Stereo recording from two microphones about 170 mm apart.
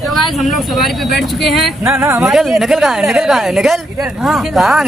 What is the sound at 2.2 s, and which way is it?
Speech, centre (ahead or behind).